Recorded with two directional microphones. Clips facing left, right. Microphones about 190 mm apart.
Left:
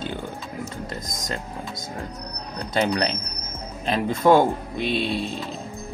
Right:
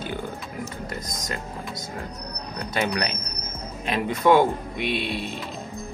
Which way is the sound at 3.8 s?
35° left (ahead or behind).